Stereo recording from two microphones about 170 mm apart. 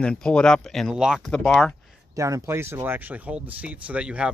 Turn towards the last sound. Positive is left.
turn(degrees=-5)  # may be behind; listen again after turning